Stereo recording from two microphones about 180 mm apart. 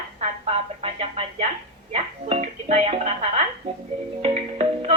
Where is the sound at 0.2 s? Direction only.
35° right (ahead or behind).